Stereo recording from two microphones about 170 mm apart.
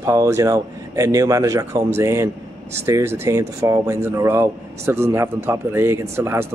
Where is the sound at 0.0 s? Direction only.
15° right (ahead or behind).